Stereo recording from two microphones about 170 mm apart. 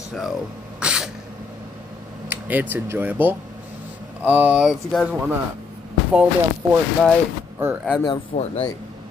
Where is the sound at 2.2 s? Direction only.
10° right (ahead or behind).